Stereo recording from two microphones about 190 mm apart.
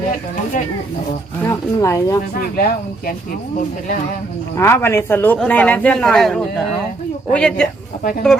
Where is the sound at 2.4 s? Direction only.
50° left (ahead or behind).